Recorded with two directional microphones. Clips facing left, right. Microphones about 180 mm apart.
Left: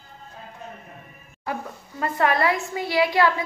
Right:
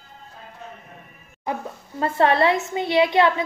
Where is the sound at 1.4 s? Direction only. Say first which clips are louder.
Right 2 dB; 25° right (ahead or behind).